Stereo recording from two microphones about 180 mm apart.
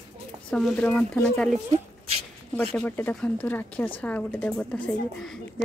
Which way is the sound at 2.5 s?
5° left (ahead or behind).